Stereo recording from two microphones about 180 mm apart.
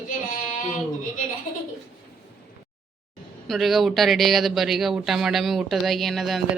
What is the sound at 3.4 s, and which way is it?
Speech, centre (ahead or behind).